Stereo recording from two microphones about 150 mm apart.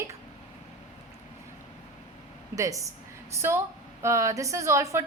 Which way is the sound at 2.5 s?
20° right (ahead or behind).